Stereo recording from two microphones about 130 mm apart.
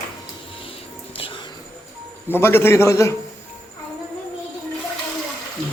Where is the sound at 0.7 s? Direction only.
45° left (ahead or behind).